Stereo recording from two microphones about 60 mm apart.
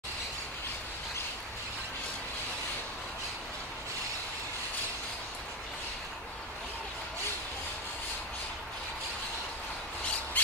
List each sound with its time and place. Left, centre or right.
10.4 s squawk: left